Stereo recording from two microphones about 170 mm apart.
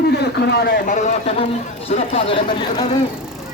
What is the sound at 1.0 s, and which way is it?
Speech, 40° left (ahead or behind).